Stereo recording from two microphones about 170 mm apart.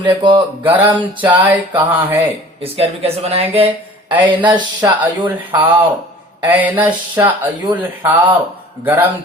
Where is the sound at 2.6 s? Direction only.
35° right (ahead or behind).